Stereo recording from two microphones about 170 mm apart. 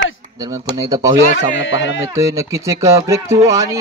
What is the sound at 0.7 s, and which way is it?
Speech, 20° right (ahead or behind).